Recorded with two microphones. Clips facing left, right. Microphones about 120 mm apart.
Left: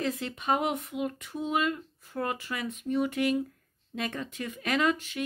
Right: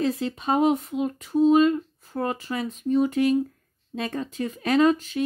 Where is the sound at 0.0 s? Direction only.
30° right (ahead or behind).